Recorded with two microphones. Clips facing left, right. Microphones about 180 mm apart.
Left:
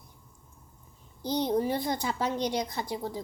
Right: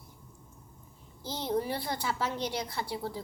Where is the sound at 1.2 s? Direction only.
15° left (ahead or behind).